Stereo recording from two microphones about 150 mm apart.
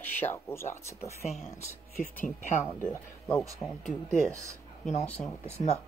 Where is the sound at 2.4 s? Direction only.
55° left (ahead or behind).